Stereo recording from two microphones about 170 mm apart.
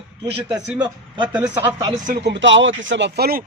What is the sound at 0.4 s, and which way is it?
Speech, 5° right (ahead or behind).